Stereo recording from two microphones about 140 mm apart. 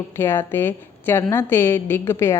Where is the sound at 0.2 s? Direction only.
15° left (ahead or behind).